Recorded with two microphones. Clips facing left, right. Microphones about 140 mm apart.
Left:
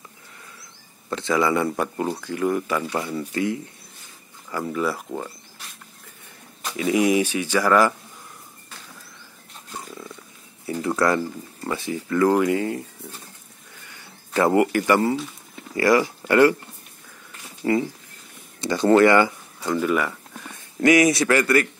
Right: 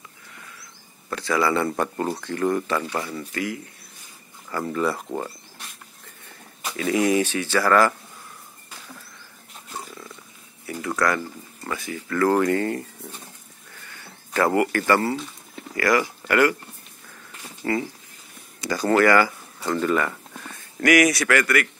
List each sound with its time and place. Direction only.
1.1 s a man's voice: 20° left (ahead or behind)
1.7 s speech: 5° left (ahead or behind)
3.2 s a man's voice: 25° left (ahead or behind)
4.5 s speech: 10° left (ahead or behind)
6.8 s speech: 15° left (ahead or behind)
9.7 s wild animals: centre (ahead or behind)
10.7 s speech: 25° left (ahead or behind); by 12.8 s 5° left (ahead or behind)
13.8 s a sound: 15° left (ahead or behind)
15.7 s speech: 25° left (ahead or behind)
17.6 s a man's voice: 15° left (ahead or behind)
19.7 s a sound: 10° left (ahead or behind)
20.8 s a man's voice: 25° left (ahead or behind)